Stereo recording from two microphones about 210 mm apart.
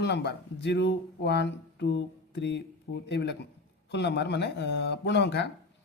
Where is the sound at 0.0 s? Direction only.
55° left (ahead or behind).